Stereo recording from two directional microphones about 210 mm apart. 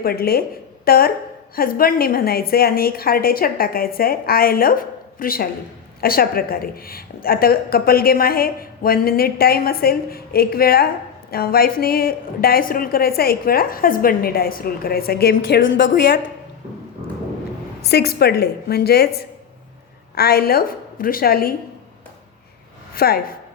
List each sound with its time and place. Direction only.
0.0 s a woman's voice: 45° left (ahead or behind)
17.8 s a woman's voice: 50° left (ahead or behind)
23.0 s a woman's voice: 45° left (ahead or behind)